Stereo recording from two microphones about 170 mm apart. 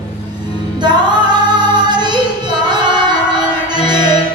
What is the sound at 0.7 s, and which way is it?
Female singing, 25° right (ahead or behind).